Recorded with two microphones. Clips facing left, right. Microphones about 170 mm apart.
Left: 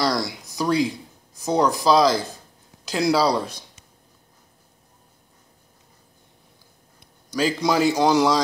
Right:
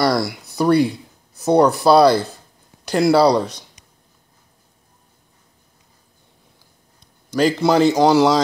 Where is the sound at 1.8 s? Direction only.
65° right (ahead or behind).